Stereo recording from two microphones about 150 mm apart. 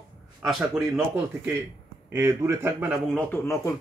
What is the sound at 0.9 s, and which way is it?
Speech, 15° right (ahead or behind).